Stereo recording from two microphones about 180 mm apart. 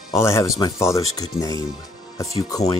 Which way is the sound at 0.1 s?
15° left (ahead or behind).